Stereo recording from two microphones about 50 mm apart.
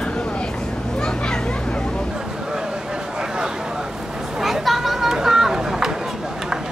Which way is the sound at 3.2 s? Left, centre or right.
Centre.